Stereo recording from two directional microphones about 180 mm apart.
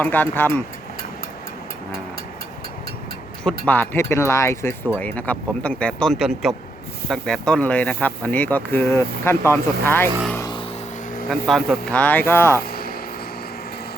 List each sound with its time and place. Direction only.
0.0 s speech: 10° left (ahead or behind)
3.7 s speech: 10° left (ahead or behind)
10.3 s vehicle: 20° left (ahead or behind)
11.3 s speech: centre (ahead or behind)